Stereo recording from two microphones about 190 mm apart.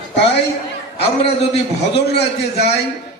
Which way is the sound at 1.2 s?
35° left (ahead or behind).